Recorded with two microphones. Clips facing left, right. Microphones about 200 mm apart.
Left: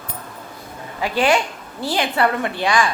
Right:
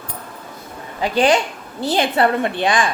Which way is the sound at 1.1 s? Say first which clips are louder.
Right 2 dB; 20° right (ahead or behind).